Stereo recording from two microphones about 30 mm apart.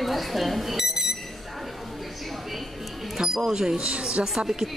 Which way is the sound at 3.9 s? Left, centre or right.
Right.